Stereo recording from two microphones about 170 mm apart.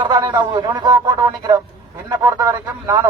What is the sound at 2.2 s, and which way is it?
Speech, 20° right (ahead or behind).